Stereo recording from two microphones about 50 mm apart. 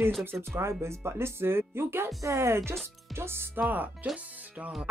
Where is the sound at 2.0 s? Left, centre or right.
Right.